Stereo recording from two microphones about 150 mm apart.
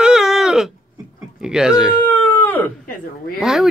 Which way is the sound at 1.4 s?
5° right (ahead or behind).